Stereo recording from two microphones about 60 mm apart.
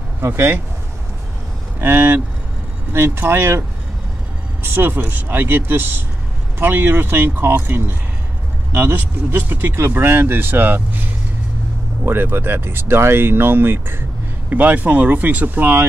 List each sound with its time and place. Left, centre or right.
1.8 s speech: right
4.6 s speech: right
14.5 s speech: right